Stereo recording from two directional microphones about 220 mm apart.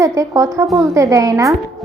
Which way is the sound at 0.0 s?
15° right (ahead or behind).